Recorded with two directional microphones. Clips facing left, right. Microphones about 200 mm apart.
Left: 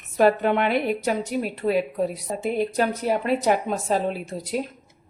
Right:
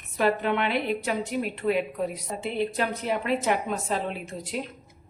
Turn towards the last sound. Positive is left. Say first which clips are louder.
# left 5 dB
turn(degrees=40)  # may be behind; listen again after turning